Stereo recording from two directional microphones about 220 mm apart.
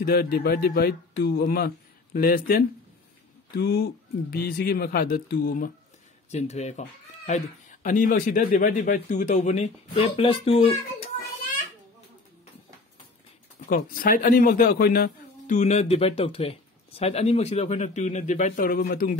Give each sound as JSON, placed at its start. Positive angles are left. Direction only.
{"t": 0.0, "sound": "speech", "side_deg": 45}
{"t": 6.3, "sound": "speech", "side_deg": 30}
{"t": 13.7, "sound": "speech", "side_deg": 40}